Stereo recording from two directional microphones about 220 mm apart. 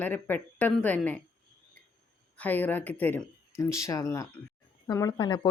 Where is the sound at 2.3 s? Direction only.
5° left (ahead or behind).